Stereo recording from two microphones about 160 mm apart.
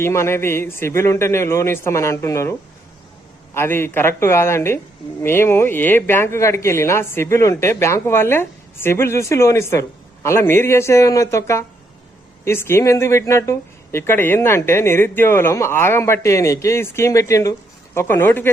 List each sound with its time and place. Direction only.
0.0 s speech: 15° left (ahead or behind)